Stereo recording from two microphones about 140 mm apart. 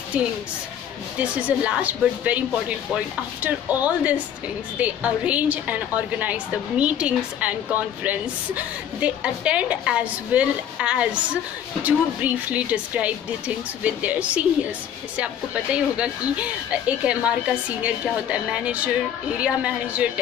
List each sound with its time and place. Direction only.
0.1 s a woman's voice: 10° right (ahead or behind)
3.4 s a woman's voice: 10° right (ahead or behind)